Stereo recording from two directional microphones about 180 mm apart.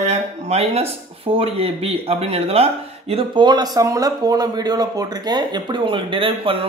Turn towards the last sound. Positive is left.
turn(degrees=-30)  # may be behind; listen again after turning